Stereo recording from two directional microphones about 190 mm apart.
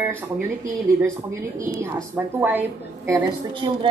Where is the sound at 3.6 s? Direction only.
25° right (ahead or behind).